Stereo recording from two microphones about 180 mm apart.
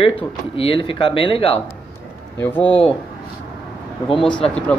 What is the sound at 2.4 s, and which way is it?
Speech, 10° left (ahead or behind).